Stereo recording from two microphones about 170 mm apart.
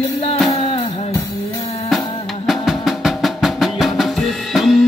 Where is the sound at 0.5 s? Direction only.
35° left (ahead or behind).